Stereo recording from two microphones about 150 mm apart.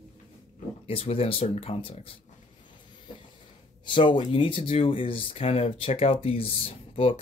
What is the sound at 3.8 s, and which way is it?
Speech, 30° left (ahead or behind).